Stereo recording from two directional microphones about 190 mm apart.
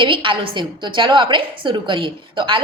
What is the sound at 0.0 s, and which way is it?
A woman's voice, 25° right (ahead or behind).